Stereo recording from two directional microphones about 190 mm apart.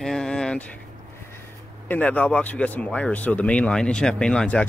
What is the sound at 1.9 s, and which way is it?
Speech, 10° left (ahead or behind).